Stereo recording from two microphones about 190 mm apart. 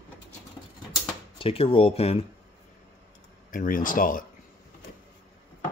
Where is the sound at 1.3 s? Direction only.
30° left (ahead or behind).